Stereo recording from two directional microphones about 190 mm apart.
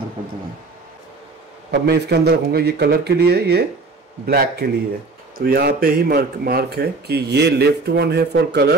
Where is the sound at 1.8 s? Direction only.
60° right (ahead or behind).